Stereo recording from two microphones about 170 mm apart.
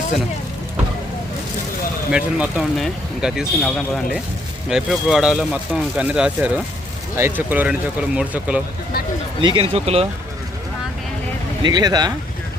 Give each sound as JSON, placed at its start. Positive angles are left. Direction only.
{"t": 2.1, "sound": "speech", "side_deg": -5}
{"t": 9.4, "sound": "speech", "side_deg": -30}
{"t": 11.6, "sound": "speech", "side_deg": -25}